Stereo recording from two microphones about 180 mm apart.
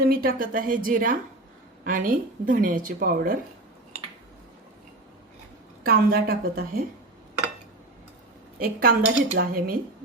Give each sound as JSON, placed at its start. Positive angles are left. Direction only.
{"t": 0.0, "sound": "speech", "side_deg": -55}
{"t": 5.8, "sound": "a woman's voice", "side_deg": -55}
{"t": 8.5, "sound": "a woman's voice", "side_deg": -55}